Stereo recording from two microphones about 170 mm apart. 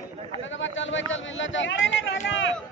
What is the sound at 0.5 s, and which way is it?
Speech, 90° left.